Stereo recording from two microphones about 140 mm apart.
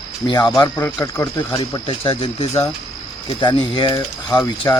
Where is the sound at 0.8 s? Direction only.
20° left (ahead or behind).